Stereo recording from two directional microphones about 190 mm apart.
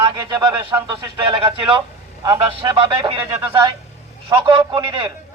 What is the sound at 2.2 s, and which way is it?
Speech, 15° right (ahead or behind).